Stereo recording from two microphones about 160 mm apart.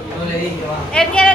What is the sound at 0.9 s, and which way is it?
Speech, 5° left (ahead or behind).